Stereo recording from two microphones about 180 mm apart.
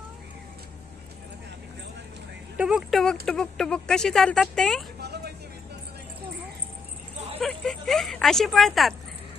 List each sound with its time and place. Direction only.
2.6 s speech: 5° right (ahead or behind)
4.9 s vehicle: 65° right (ahead or behind)
7.4 s speech: centre (ahead or behind)